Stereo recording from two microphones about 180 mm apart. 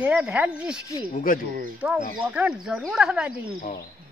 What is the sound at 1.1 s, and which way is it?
Speech, 50° left (ahead or behind).